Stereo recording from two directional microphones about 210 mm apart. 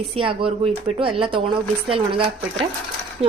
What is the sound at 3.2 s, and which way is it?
Speech, 30° right (ahead or behind).